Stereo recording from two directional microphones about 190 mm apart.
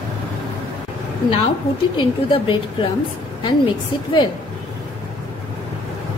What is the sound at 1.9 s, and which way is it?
A woman's voice, 25° left (ahead or behind).